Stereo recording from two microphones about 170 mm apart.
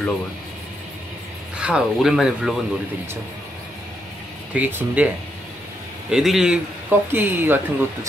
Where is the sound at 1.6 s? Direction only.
5° right (ahead or behind).